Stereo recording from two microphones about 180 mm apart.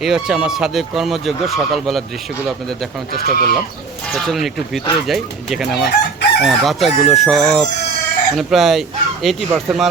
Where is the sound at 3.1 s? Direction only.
55° left (ahead or behind).